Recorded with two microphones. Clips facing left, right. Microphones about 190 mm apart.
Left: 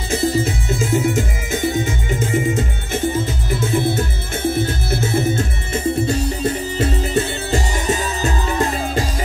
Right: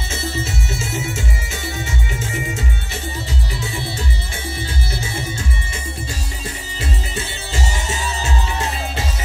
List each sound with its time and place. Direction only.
0.1 s music: 15° left (ahead or behind)
4.4 s music: 55° left (ahead or behind)
6.8 s music: 40° left (ahead or behind)